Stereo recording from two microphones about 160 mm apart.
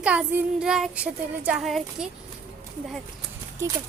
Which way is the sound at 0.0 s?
5° right (ahead or behind).